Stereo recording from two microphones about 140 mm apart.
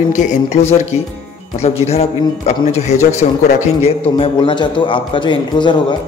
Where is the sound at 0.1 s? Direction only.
60° left (ahead or behind).